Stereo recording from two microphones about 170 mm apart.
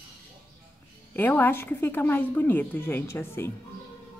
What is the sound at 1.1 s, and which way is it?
Speech, 10° left (ahead or behind).